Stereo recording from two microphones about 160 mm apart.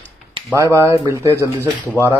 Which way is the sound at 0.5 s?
20° right (ahead or behind).